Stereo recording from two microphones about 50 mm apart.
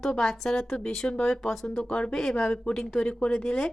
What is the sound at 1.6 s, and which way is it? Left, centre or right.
Speech, centre.